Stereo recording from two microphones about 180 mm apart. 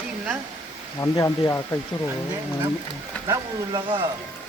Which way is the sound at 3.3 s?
25° right (ahead or behind).